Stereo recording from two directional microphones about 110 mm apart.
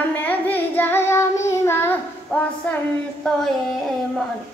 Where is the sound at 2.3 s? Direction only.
15° left (ahead or behind).